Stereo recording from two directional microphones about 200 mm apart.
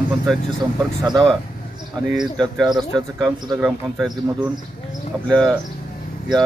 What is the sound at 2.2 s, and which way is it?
A man's voice, centre (ahead or behind).